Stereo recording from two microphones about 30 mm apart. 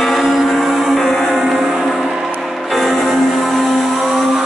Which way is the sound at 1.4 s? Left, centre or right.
Centre.